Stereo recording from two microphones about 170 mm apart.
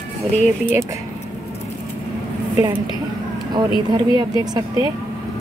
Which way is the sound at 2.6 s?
25° right (ahead or behind).